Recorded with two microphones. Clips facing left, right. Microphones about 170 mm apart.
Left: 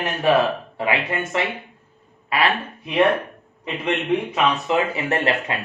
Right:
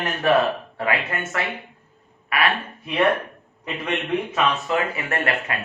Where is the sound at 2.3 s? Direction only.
30° left (ahead or behind).